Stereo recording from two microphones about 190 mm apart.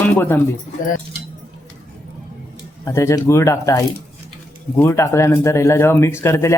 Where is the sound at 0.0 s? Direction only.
10° left (ahead or behind).